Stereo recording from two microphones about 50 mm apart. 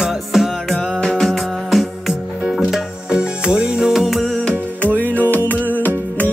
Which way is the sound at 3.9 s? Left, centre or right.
Centre.